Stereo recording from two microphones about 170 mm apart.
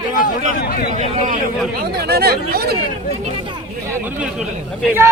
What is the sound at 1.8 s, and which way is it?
Speech, 65° right (ahead or behind).